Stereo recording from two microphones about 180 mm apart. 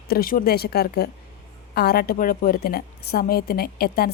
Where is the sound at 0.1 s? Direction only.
55° left (ahead or behind).